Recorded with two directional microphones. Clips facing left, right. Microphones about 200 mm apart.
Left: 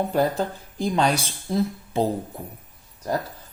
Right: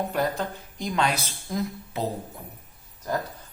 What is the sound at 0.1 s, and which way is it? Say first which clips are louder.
Speech: left 4 dB; 30° left (ahead or behind).